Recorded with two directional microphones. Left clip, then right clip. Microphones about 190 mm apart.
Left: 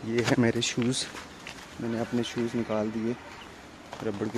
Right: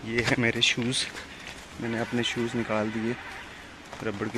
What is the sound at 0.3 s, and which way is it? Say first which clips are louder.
Speech: right 4 dB; 30° left (ahead or behind).